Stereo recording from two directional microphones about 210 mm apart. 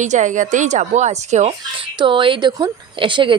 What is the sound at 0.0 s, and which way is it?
Speech, 35° right (ahead or behind).